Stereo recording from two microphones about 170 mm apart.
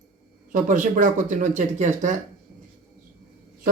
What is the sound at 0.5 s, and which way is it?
Speech, 50° right (ahead or behind).